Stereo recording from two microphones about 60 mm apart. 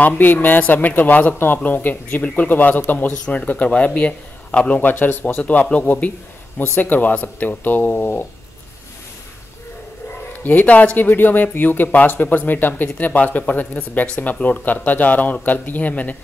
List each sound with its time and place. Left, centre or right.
0.2 s speech: left
10.4 s speech: left